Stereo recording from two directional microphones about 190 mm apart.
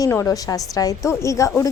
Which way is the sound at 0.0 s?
15° left (ahead or behind).